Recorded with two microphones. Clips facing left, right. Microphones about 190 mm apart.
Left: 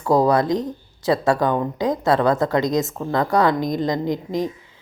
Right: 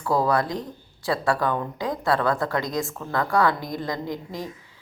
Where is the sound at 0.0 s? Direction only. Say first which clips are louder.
Left 5 dB; 20° left (ahead or behind).